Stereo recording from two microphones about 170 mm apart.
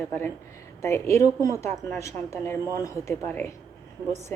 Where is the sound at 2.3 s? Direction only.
15° left (ahead or behind).